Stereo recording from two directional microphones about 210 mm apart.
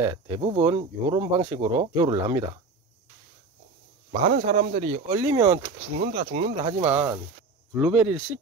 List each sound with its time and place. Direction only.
0.0 s speech: 15° right (ahead or behind)
4.2 s speech: 35° right (ahead or behind)
5.1 s speech: 15° right (ahead or behind)
5.9 s speech: 30° right (ahead or behind)
7.7 s speech: 5° right (ahead or behind)